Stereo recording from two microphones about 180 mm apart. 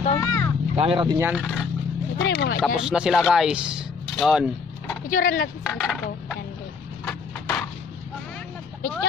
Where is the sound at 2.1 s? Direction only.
70° left (ahead or behind).